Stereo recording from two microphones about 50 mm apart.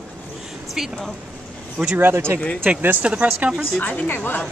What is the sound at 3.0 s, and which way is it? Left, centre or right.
Speech, right.